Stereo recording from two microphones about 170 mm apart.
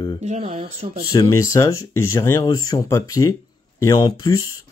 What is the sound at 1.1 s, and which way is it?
Speech, 20° left (ahead or behind).